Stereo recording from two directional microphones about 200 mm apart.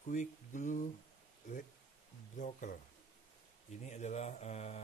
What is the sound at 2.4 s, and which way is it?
Speech, 40° left (ahead or behind).